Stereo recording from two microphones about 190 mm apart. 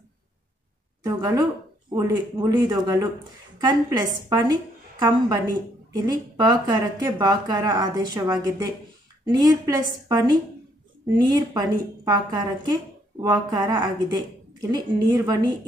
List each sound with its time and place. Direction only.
1.0 s a woman's voice: 20° right (ahead or behind)